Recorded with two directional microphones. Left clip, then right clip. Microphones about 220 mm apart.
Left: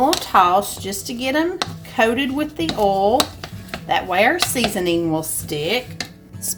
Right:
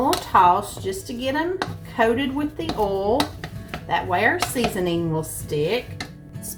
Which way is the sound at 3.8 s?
50° left (ahead or behind).